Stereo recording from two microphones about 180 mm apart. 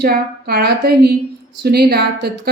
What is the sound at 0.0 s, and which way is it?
Speech, 60° right (ahead or behind).